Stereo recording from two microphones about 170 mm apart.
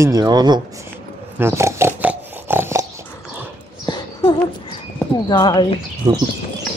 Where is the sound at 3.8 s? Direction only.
25° left (ahead or behind).